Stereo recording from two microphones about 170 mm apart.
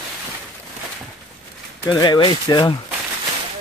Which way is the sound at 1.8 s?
25° left (ahead or behind).